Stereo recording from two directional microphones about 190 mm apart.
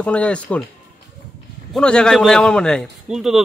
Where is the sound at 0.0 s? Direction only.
5° left (ahead or behind).